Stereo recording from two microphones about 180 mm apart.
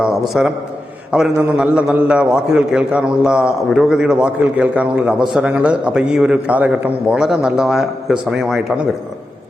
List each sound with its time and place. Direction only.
0.0 s a man's voice: centre (ahead or behind)